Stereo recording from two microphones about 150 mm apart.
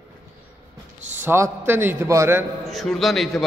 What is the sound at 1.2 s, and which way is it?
A man's voice, 15° right (ahead or behind).